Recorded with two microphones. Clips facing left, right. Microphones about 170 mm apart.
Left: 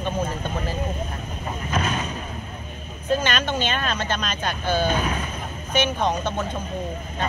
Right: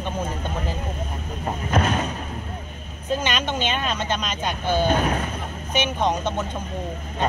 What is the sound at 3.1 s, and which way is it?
Speech, 15° right (ahead or behind).